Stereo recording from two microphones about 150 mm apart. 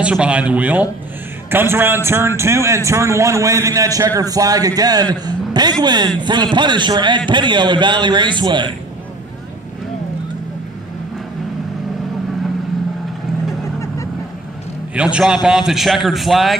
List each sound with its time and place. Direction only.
0.0 s a man's voice: 10° right (ahead or behind); by 8.7 s 30° right (ahead or behind)
15.0 s a man's voice: 5° right (ahead or behind)